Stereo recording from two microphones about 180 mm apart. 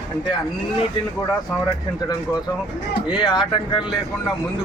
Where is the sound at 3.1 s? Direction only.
25° left (ahead or behind).